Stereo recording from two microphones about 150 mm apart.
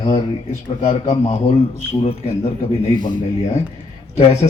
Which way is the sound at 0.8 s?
45° left (ahead or behind).